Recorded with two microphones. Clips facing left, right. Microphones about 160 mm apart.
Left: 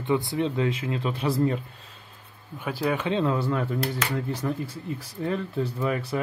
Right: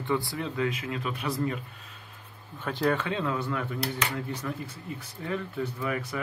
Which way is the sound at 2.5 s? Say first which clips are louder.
Even; 10° left (ahead or behind).